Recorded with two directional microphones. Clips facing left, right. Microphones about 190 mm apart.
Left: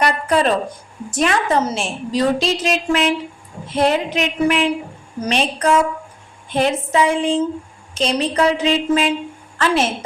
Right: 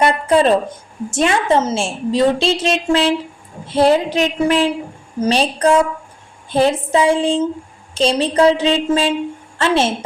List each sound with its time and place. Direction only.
0.0 s a woman's voice: 25° right (ahead or behind)
3.7 s a sound: 30° right (ahead or behind)
9.6 s a woman's voice: 30° right (ahead or behind)